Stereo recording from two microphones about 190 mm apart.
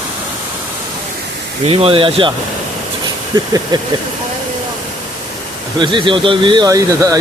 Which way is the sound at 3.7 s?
20° right (ahead or behind).